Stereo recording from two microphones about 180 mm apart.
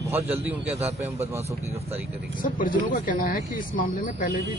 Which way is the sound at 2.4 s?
50° left (ahead or behind).